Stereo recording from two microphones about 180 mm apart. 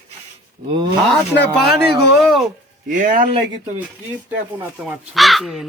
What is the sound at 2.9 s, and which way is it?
Speech, 50° right (ahead or behind).